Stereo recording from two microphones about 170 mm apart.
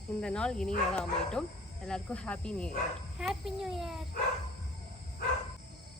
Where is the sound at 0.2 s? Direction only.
5° left (ahead or behind).